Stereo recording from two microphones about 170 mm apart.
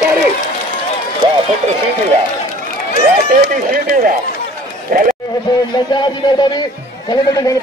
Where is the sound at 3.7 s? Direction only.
55° right (ahead or behind).